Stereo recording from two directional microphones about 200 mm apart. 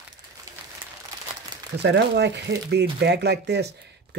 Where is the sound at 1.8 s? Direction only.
60° right (ahead or behind).